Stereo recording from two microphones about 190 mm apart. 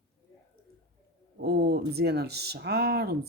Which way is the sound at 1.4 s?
55° right (ahead or behind).